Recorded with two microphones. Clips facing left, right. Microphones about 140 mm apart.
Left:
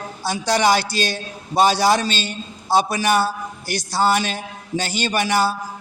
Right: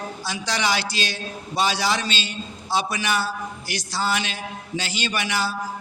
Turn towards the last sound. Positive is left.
turn(degrees=45)  # may be behind; listen again after turning